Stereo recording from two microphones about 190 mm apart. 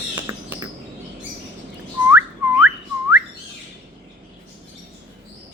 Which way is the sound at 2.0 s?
10° right (ahead or behind).